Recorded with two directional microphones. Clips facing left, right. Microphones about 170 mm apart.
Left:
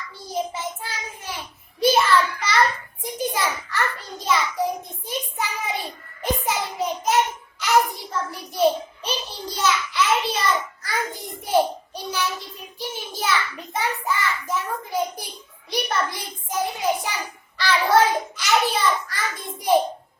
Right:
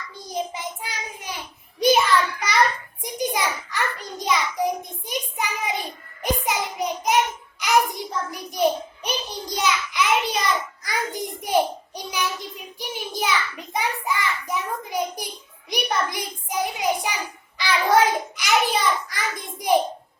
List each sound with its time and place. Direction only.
0.5 s child singing: 15° right (ahead or behind)
3.0 s a sound: 15° right (ahead or behind)
6.2 s child singing: 15° right (ahead or behind)
7.6 s hands: 15° right (ahead or behind)
11.9 s child singing: 15° right (ahead or behind)
13.7 s a sound: 10° right (ahead or behind)